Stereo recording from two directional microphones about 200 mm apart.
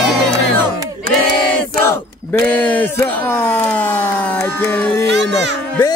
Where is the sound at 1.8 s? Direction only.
10° left (ahead or behind).